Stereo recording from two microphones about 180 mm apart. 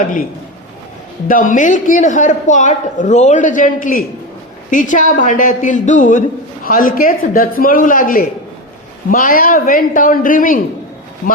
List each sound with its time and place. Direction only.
1.3 s a man's voice: 50° left (ahead or behind)